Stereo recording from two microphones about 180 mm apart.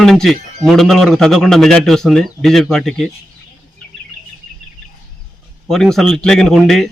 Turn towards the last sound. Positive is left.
turn(degrees=0)  # may be behind; listen again after turning